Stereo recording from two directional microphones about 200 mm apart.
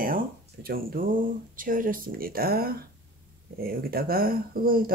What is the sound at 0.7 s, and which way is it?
Speech, 45° right (ahead or behind).